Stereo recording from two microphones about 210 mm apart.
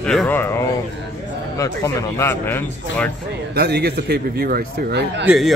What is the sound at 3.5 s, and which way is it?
A man's voice, 50° right (ahead or behind).